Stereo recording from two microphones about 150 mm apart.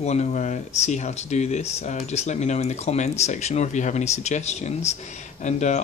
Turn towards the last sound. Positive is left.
turn(degrees=50)  # may be behind; listen again after turning